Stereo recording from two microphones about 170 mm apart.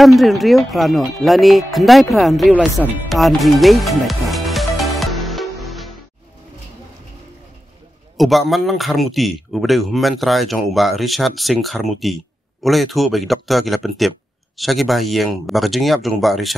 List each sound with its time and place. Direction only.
0.0 s speech: centre (ahead or behind)
3.1 s music: centre (ahead or behind)
8.2 s speech: centre (ahead or behind)